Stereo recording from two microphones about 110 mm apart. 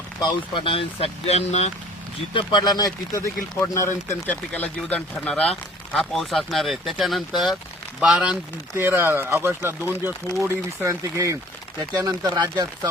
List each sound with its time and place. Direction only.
0.2 s speech: 50° left (ahead or behind); by 1.7 s 80° left
2.3 s speech: 45° left (ahead or behind); by 8.4 s 5° right (ahead or behind)
8.8 s speech: 20° right (ahead or behind); by 12.9 s 40° right (ahead or behind)